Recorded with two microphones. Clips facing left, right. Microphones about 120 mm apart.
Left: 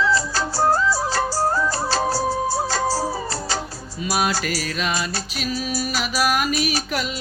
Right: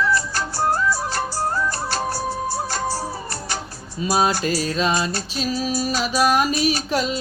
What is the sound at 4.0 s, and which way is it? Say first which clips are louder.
Music: right 3 dB; 30° right (ahead or behind).